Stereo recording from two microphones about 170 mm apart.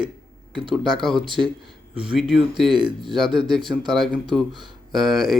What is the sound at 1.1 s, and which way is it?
Speech, 30° right (ahead or behind).